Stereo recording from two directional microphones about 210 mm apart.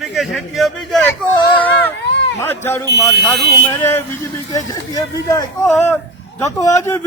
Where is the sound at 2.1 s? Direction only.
55° left (ahead or behind).